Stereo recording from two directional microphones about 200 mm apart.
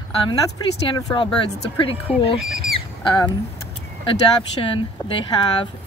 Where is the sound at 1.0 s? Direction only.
15° left (ahead or behind).